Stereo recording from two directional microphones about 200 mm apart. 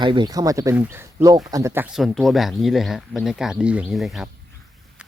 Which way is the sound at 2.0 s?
Centre (ahead or behind).